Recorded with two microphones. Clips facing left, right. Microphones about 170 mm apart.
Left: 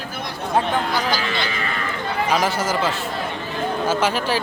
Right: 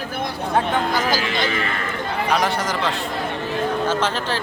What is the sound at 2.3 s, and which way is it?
Speech, 5° left (ahead or behind).